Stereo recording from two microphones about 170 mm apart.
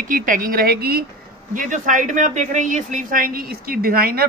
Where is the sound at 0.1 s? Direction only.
50° right (ahead or behind); by 1.0 s 70° right (ahead or behind).